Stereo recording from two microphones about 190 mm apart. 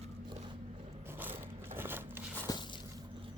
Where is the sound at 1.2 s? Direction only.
10° right (ahead or behind).